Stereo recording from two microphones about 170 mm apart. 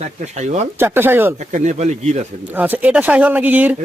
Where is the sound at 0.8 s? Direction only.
15° right (ahead or behind).